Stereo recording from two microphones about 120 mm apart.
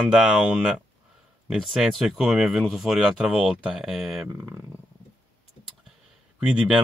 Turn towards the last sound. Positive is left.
turn(degrees=-10)  # may be behind; listen again after turning